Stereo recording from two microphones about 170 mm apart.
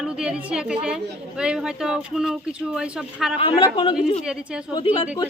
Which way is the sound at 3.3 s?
35° left (ahead or behind).